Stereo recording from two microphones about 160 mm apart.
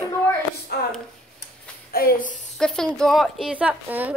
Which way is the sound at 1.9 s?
60° left (ahead or behind).